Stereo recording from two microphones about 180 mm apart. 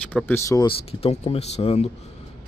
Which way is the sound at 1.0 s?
35° left (ahead or behind).